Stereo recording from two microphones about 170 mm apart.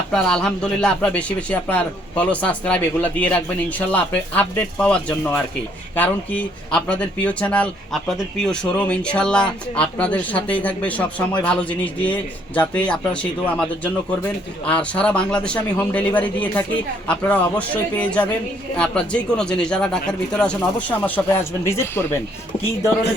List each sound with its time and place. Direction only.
0.1 s speech: 5° left (ahead or behind)